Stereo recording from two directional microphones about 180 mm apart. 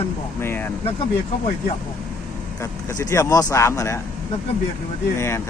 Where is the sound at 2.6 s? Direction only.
15° left (ahead or behind).